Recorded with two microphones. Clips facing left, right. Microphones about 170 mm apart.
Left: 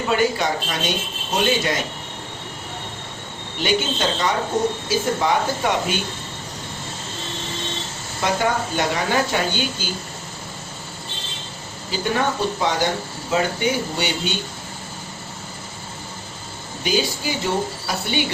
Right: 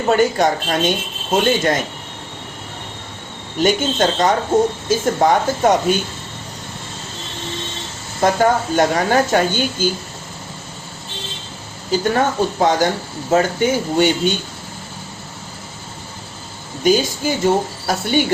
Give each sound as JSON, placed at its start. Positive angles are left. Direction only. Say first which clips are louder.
{"t": 0.1, "sound": "a woman's voice", "louder": "right 6 dB", "side_deg": -45}
{"t": 3.6, "sound": "a woman's voice", "louder": "right 5 dB", "side_deg": -45}
{"t": 8.2, "sound": "a woman's voice", "louder": "right 6 dB", "side_deg": -45}
{"t": 11.9, "sound": "a woman's voice", "louder": "right 5 dB", "side_deg": -45}
{"t": 16.8, "sound": "a woman's voice", "louder": "right 6 dB", "side_deg": -45}